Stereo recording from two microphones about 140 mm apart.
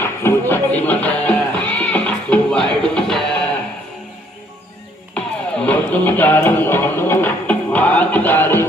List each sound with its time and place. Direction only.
0.0 s music: 15° left (ahead or behind)
5.1 s music: 10° left (ahead or behind)